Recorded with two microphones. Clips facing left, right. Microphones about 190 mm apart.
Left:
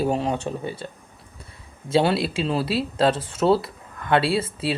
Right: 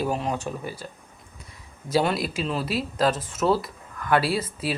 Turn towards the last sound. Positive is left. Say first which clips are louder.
# left 3 dB
turn(degrees=30)  # may be behind; listen again after turning